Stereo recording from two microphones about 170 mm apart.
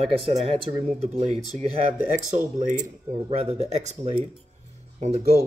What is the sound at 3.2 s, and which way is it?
Speech, 40° right (ahead or behind).